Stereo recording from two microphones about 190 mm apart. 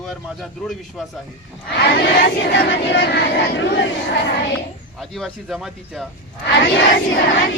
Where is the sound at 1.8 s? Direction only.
60° left (ahead or behind).